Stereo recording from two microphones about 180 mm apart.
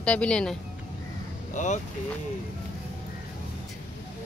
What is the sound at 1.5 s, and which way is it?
Speech, 40° left (ahead or behind).